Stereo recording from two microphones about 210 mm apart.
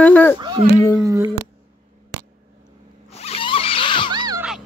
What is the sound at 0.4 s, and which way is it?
Speech, 20° right (ahead or behind).